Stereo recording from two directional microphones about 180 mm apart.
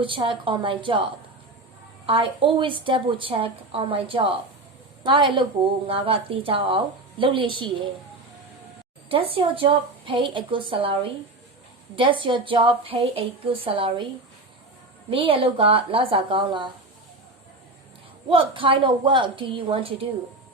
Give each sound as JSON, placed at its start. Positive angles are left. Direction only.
{"t": 0.0, "sound": "a woman's voice", "side_deg": -30}
{"t": 9.0, "sound": "a woman's voice", "side_deg": -30}
{"t": 15.1, "sound": "a woman's voice", "side_deg": -30}
{"t": 18.3, "sound": "a woman's voice", "side_deg": -30}